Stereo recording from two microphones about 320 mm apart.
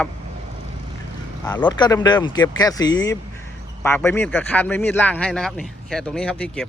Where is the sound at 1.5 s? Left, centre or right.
Centre.